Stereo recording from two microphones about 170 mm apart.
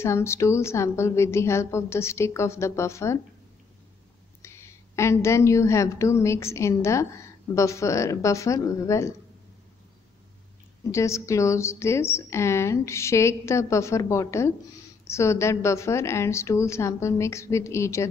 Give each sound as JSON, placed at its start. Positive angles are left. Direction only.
{"t": 0.0, "sound": "a woman's voice", "side_deg": 15}
{"t": 4.4, "sound": "a woman's voice", "side_deg": 15}
{"t": 10.9, "sound": "a woman's voice", "side_deg": 15}